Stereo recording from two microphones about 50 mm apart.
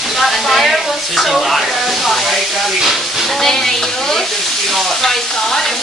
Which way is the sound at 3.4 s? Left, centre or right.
Centre.